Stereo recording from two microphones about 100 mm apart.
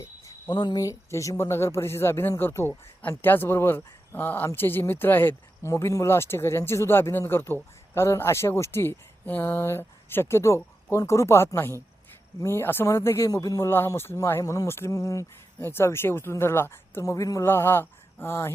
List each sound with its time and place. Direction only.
0.0 s cricket: 25° left (ahead or behind)
0.5 s speech: 45° left (ahead or behind)
0.9 s speech: 30° left (ahead or behind)
13.7 s speech: 25° left (ahead or behind)
17.4 s speech: 25° left (ahead or behind)